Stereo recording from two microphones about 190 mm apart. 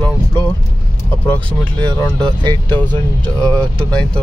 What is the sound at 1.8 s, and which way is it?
Speech, 20° right (ahead or behind).